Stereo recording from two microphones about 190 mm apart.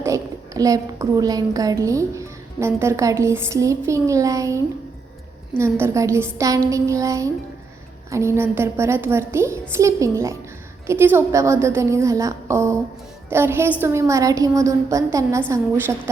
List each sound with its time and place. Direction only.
0.0 s a woman's voice: 15° right (ahead or behind)
5.8 s a woman's voice: 15° right (ahead or behind)